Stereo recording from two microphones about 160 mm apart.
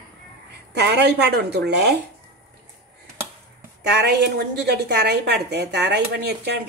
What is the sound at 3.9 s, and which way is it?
Speech, 90° right.